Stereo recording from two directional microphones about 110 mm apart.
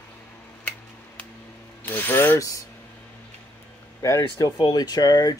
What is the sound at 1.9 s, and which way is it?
Ratchet, 20° left (ahead or behind).